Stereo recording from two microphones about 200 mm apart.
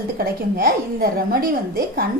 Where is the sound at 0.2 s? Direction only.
45° right (ahead or behind).